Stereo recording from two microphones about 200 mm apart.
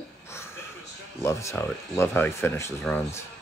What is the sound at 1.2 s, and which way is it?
Speech, 15° left (ahead or behind).